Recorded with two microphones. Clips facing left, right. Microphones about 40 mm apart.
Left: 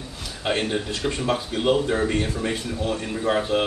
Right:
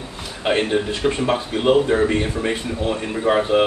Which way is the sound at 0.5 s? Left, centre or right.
Centre.